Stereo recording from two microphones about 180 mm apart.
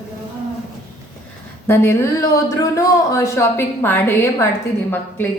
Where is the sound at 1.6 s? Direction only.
15° left (ahead or behind).